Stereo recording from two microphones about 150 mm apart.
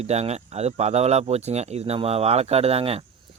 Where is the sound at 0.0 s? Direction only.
45° right (ahead or behind).